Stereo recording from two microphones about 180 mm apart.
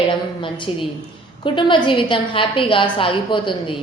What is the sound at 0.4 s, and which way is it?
A woman's voice, 25° left (ahead or behind).